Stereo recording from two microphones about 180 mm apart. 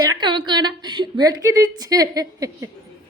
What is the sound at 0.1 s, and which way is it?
A woman's voice, 25° right (ahead or behind).